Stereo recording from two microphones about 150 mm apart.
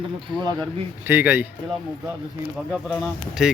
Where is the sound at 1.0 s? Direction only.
15° right (ahead or behind).